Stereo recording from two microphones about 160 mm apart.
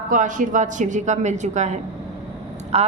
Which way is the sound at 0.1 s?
55° right (ahead or behind).